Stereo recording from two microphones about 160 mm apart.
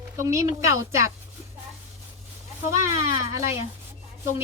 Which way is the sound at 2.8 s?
20° right (ahead or behind).